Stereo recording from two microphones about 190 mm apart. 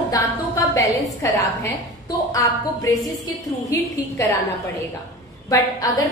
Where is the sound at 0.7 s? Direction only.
20° left (ahead or behind).